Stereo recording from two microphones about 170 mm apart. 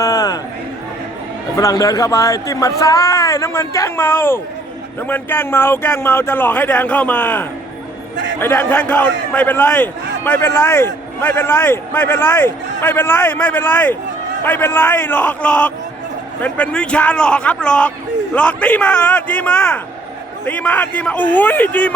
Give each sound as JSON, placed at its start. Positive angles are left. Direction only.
{"t": 0.0, "sound": "a sound", "side_deg": 20}
{"t": 1.5, "sound": "a man's voice", "side_deg": 20}
{"t": 8.1, "sound": "a man's voice", "side_deg": -90}
{"t": 8.4, "sound": "a man's voice", "side_deg": 10}